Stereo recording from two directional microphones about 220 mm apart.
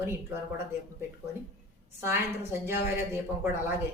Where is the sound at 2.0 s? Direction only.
10° right (ahead or behind).